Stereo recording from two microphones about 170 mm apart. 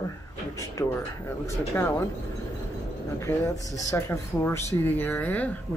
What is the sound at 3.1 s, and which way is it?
Speech, 15° left (ahead or behind).